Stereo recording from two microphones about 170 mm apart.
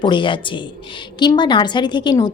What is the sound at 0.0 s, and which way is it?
A woman's voice, 30° left (ahead or behind).